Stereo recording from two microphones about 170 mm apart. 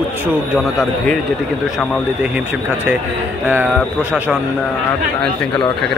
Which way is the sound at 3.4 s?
10° right (ahead or behind).